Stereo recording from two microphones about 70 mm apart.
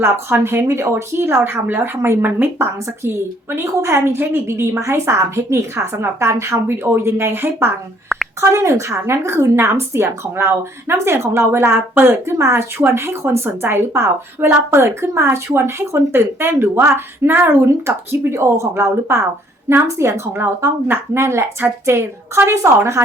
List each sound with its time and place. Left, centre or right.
0.0 s speech: right
3.5 s speech: right